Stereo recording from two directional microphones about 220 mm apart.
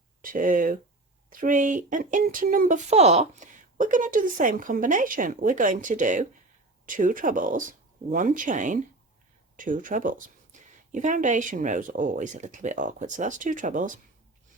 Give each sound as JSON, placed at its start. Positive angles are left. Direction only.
{"t": 0.2, "sound": "speech", "side_deg": -40}